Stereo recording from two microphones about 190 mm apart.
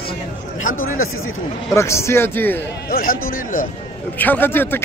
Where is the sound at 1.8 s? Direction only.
15° left (ahead or behind).